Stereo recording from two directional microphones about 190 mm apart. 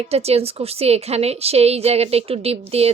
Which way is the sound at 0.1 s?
30° right (ahead or behind).